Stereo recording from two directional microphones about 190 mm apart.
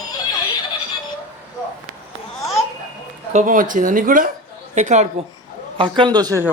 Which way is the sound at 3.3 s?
40° right (ahead or behind).